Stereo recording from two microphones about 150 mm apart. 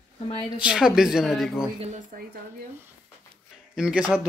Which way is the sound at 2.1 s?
75° right (ahead or behind).